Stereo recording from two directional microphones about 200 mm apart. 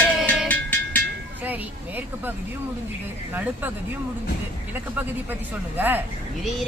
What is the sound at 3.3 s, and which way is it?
Speech, 10° right (ahead or behind).